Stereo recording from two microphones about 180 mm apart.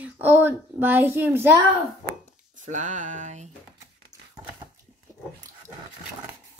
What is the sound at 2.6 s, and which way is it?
Speech, 45° right (ahead or behind).